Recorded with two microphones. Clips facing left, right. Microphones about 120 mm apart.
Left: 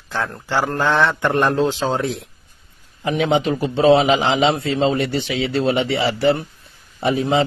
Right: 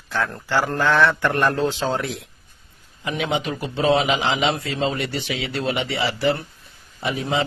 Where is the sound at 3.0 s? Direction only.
30° left (ahead or behind).